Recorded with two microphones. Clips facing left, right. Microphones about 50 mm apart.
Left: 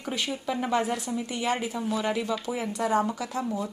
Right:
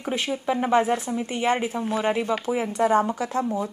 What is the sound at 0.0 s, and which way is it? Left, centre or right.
A woman's voice, right.